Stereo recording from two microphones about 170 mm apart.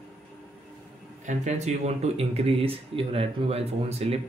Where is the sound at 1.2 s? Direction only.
45° right (ahead or behind).